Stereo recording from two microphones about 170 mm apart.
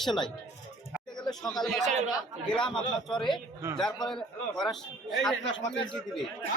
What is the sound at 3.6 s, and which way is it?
Speech, 15° right (ahead or behind).